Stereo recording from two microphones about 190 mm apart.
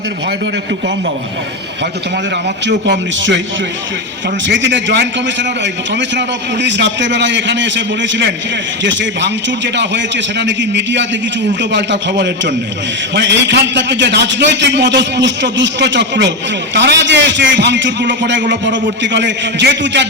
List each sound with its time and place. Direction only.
2.6 s a man's voice: 70° right (ahead or behind)
4.4 s a man's voice: 70° right (ahead or behind)